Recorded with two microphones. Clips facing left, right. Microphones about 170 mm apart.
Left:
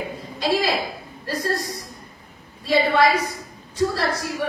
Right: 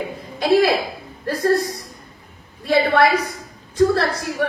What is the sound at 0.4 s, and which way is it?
A woman's voice, 60° right (ahead or behind).